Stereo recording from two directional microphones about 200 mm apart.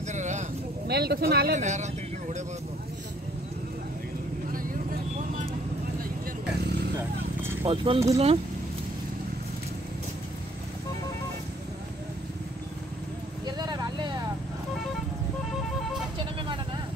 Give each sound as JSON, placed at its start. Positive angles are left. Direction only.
{"t": 0.1, "sound": "a sound", "side_deg": -35}
{"t": 0.8, "sound": "speech", "side_deg": -55}
{"t": 1.5, "sound": "speech", "side_deg": -35}
{"t": 7.6, "sound": "speech", "side_deg": -25}
{"t": 13.5, "sound": "vehicle", "side_deg": -20}
{"t": 16.2, "sound": "vehicle", "side_deg": -25}